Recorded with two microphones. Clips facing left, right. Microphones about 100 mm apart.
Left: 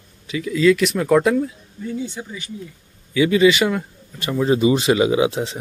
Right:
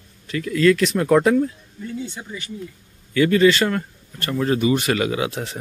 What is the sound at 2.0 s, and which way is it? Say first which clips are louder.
Speech: left 2 dB; 15° left (ahead or behind).